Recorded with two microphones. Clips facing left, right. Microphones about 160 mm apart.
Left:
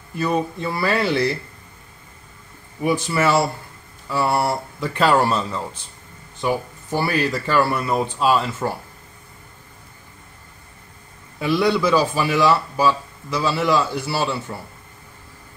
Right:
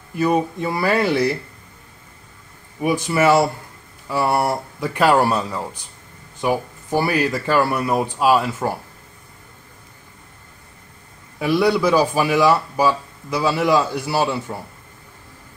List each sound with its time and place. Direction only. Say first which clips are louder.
0.1 s speech: right 3 dB; 10° right (ahead or behind)
2.8 s speech: right 2 dB; 15° right (ahead or behind)
11.3 s speech: right 2 dB; 10° right (ahead or behind)